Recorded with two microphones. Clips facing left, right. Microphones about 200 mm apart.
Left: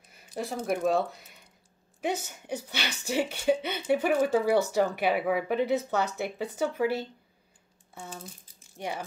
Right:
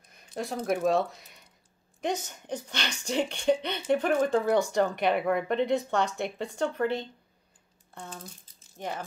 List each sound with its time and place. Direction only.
0.1 s speech: 5° left (ahead or behind)